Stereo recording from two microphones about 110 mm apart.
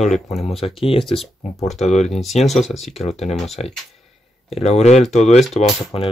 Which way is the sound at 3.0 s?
80° left.